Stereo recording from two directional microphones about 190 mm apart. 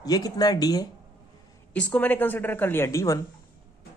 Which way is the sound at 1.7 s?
10° left (ahead or behind).